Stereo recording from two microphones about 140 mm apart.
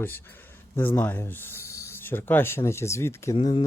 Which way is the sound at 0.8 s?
15° left (ahead or behind).